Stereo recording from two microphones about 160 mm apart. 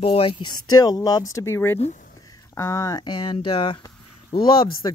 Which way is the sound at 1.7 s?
45° left (ahead or behind).